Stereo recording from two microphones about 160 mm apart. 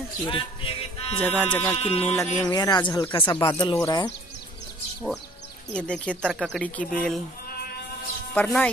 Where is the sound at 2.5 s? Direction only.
25° left (ahead or behind).